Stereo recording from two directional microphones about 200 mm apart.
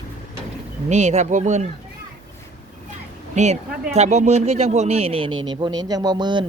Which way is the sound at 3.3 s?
35° right (ahead or behind).